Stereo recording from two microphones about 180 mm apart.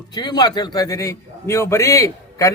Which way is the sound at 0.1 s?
25° left (ahead or behind).